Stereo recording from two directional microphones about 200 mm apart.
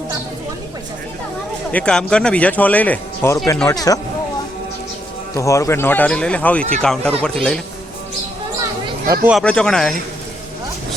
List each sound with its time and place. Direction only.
1.7 s speech: 5° left (ahead or behind)
5.3 s speech: 15° left (ahead or behind)
9.4 s speech: 5° left (ahead or behind)